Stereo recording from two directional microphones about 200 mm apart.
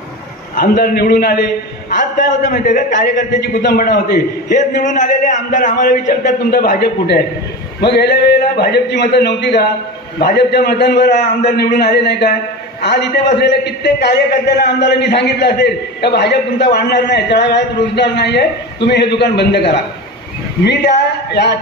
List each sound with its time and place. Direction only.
0.6 s a man's voice: 45° left (ahead or behind)